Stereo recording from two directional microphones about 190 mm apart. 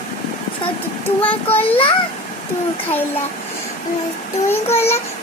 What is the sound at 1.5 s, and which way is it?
Speech, 30° left (ahead or behind).